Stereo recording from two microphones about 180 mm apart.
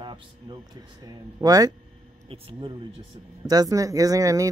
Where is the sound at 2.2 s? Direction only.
30° right (ahead or behind).